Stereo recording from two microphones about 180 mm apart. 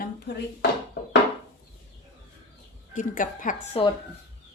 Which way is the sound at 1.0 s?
60° left (ahead or behind).